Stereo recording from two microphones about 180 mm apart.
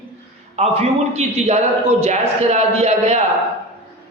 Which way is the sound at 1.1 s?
35° right (ahead or behind).